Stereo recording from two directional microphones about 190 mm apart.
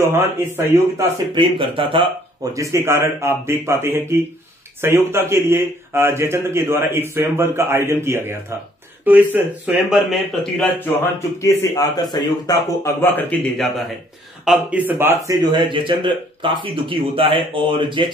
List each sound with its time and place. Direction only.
0.1 s a man's voice: 10° right (ahead or behind)
1.3 s speech: 25° right (ahead or behind)
2.5 s a man's voice: 15° right (ahead or behind); by 10.7 s centre (ahead or behind)
11.4 s a man's voice: 20° left (ahead or behind); by 15.3 s 10° right (ahead or behind)
15.5 s speech: 25° right (ahead or behind)